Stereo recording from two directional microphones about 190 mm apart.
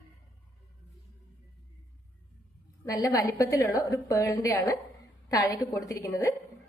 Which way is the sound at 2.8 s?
20° left (ahead or behind).